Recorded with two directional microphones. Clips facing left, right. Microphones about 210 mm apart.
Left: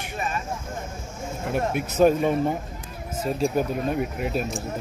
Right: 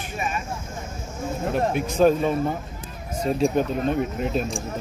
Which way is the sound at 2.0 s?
10° left (ahead or behind).